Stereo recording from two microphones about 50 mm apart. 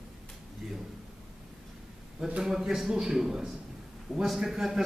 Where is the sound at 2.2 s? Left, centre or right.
Centre.